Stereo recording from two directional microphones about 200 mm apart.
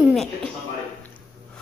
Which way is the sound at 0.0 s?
Centre (ahead or behind).